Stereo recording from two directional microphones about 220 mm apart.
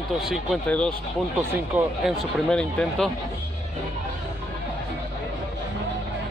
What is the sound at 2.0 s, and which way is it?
Speech, centre (ahead or behind).